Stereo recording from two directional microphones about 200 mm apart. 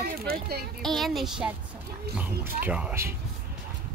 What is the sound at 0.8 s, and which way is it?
A woman's voice, centre (ahead or behind).